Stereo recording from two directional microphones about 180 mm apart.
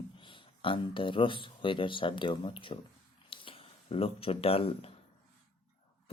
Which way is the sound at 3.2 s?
30° left (ahead or behind).